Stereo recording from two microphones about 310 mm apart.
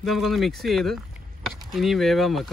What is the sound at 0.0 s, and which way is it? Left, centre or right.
Speech, centre.